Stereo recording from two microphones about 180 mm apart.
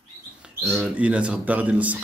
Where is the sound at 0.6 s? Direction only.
5° left (ahead or behind).